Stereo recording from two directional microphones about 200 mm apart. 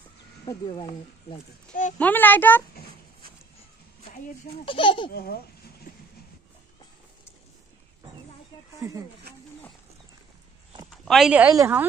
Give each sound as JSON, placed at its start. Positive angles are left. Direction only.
{"t": 0.5, "sound": "speech", "side_deg": 25}
{"t": 2.0, "sound": "speech", "side_deg": 10}
{"t": 4.6, "sound": "speech", "side_deg": 25}
{"t": 5.1, "sound": "speech", "side_deg": 50}
{"t": 5.9, "sound": "a sound", "side_deg": 40}
{"t": 8.7, "sound": "speech", "side_deg": -15}
{"t": 10.9, "sound": "speech", "side_deg": 0}